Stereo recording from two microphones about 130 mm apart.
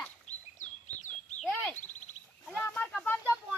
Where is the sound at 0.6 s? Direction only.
65° left (ahead or behind).